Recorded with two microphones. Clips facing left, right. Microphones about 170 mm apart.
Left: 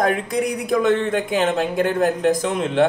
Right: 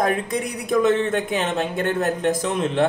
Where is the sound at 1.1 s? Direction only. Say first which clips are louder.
Left 3 dB; 5° left (ahead or behind).